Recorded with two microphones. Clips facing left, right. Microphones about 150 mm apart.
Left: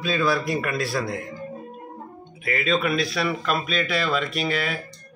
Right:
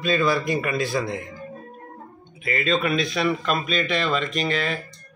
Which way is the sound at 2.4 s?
5° left (ahead or behind).